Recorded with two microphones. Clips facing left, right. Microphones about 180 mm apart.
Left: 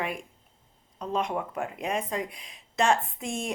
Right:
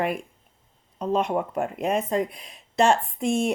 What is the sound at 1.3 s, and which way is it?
Speech, 40° right (ahead or behind).